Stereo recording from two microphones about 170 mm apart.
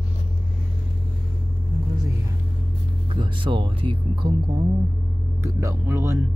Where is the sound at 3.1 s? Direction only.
30° right (ahead or behind).